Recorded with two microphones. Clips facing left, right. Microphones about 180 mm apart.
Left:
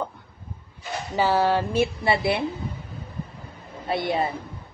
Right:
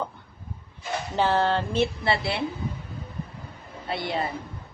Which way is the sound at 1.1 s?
5° left (ahead or behind).